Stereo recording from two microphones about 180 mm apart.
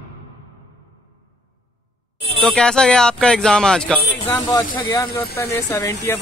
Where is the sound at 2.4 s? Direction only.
5° left (ahead or behind).